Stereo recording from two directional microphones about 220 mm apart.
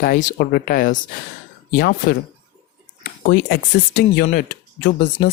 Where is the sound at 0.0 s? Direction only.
40° left (ahead or behind).